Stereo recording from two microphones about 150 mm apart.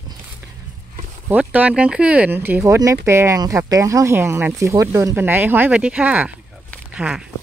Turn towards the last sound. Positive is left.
turn(degrees=-10)  # may be behind; listen again after turning